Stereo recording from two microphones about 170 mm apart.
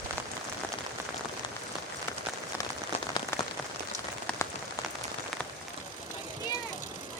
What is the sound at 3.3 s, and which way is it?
Rain on surface, 15° left (ahead or behind).